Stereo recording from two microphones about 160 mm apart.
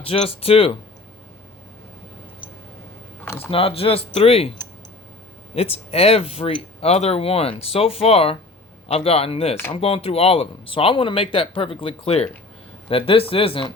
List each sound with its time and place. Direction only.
0.0 s speech: 35° left (ahead or behind)
3.2 s a sound: 15° left (ahead or behind)
3.5 s speech: 35° left (ahead or behind)
5.5 s speech: 40° left (ahead or behind)